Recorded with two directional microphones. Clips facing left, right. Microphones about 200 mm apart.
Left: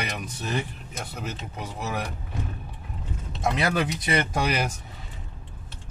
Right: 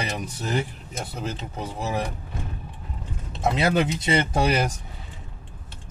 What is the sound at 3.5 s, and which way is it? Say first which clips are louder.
Speech: right 5 dB; 25° right (ahead or behind).